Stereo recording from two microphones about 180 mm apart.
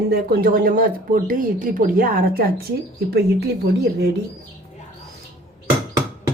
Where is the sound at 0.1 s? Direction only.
55° right (ahead or behind).